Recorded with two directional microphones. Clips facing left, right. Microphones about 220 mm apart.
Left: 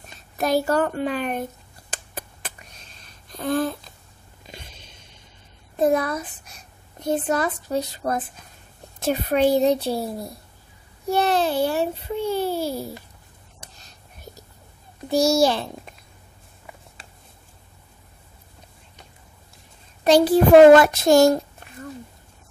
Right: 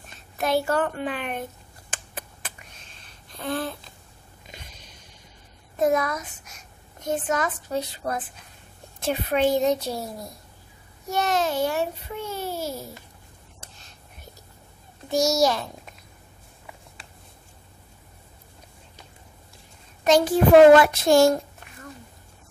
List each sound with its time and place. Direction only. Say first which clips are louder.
0.4 s a child's voice: left 3 dB; 40° left (ahead or behind)
1.9 s a sound: left 3 dB; 35° left (ahead or behind)
5.8 s a woman's voice: left 2 dB; 30° left (ahead or behind)
11.1 s a child's voice: left 4 dB; 30° left (ahead or behind)
15.0 s a child's voice: left 3 dB; 30° left (ahead or behind)
20.0 s a child's voice: left 3 dB; 35° left (ahead or behind)